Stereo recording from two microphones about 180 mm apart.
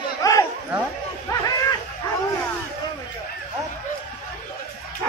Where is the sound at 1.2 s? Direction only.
20° left (ahead or behind).